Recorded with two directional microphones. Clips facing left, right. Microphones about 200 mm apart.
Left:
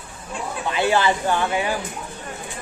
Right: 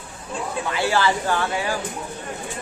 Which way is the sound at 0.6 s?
20° left (ahead or behind).